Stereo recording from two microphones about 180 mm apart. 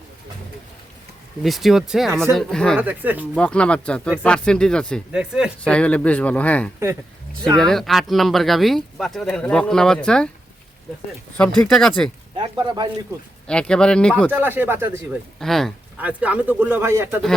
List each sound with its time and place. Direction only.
1.5 s speech: centre (ahead or behind)
2.8 s speech: 10° right (ahead or behind)
3.3 s speech: 5° left (ahead or behind)
5.6 s speech: 5° left (ahead or behind)
11.3 s speech: 5° left (ahead or behind)
12.6 s speech: 20° right (ahead or behind)
13.5 s speech: 5° left (ahead or behind)
14.3 s speech: 10° right (ahead or behind)
15.4 s speech: centre (ahead or behind); by 17.2 s 15° right (ahead or behind)